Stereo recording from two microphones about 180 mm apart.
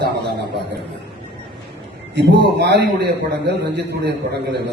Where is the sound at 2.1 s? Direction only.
70° right (ahead or behind).